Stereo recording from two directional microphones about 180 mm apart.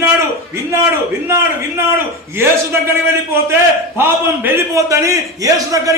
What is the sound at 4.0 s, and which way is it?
A man's voice, 15° right (ahead or behind).